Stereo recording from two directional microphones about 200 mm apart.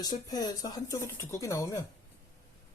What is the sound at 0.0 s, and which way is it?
Speech, 20° left (ahead or behind).